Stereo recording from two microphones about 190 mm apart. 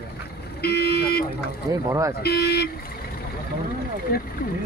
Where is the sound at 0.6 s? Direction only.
55° left (ahead or behind).